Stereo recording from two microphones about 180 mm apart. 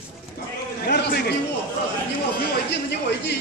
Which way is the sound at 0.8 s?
65° left (ahead or behind).